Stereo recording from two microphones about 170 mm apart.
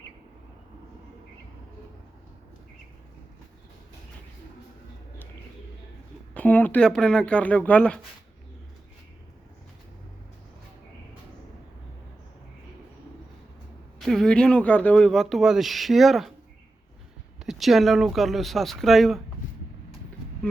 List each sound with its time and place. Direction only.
6.3 s speech: 10° left (ahead or behind)
14.0 s speech: centre (ahead or behind)
17.4 s speech: centre (ahead or behind)